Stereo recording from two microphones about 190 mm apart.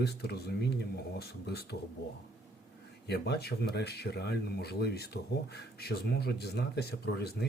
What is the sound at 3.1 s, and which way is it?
Speech, 60° left (ahead or behind).